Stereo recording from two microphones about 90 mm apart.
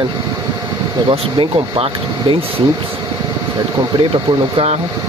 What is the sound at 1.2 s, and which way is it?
Speech, 85° right.